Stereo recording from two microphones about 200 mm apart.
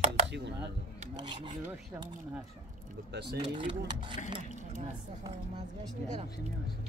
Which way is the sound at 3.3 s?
25° right (ahead or behind).